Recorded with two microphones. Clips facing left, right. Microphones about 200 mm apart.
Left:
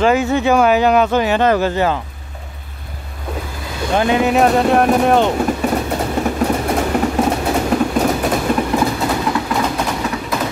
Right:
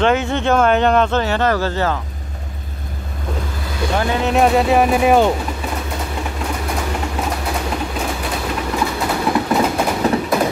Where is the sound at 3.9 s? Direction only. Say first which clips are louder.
Left 5 dB; 20° left (ahead or behind).